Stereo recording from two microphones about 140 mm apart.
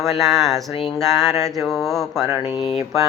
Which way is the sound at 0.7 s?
40° left (ahead or behind).